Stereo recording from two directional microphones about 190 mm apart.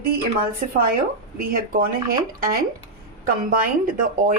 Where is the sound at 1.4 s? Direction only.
50° right (ahead or behind).